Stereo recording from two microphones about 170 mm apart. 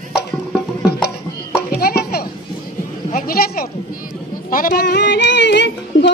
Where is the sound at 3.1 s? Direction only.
60° left (ahead or behind).